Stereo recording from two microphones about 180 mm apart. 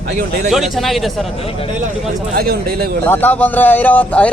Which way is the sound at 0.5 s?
Centre (ahead or behind).